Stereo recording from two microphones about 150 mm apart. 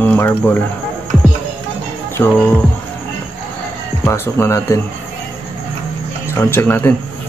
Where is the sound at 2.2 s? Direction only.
10° left (ahead or behind).